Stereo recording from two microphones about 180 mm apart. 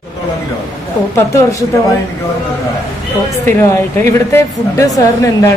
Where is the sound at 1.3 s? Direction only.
15° left (ahead or behind).